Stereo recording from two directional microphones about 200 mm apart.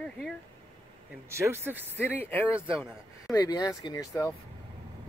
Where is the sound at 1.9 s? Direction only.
10° left (ahead or behind).